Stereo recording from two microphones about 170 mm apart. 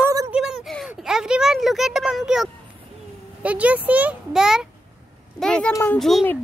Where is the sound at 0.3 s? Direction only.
5° right (ahead or behind).